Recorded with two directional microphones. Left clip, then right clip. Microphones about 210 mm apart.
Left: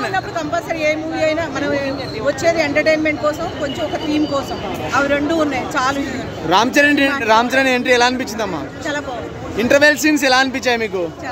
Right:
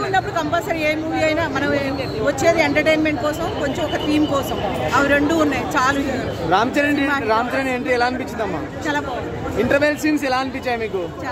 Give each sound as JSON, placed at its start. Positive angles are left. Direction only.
{"t": 0.1, "sound": "speech", "side_deg": 0}
{"t": 6.5, "sound": "a man's voice", "side_deg": 40}
{"t": 9.6, "sound": "a man's voice", "side_deg": 40}